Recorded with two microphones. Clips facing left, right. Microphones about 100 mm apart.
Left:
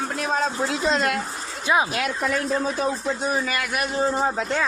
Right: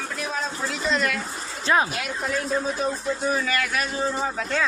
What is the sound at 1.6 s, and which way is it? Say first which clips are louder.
Speech: even; 10° left (ahead or behind).